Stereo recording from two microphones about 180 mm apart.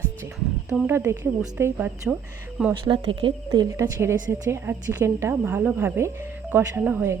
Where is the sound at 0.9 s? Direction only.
10° right (ahead or behind).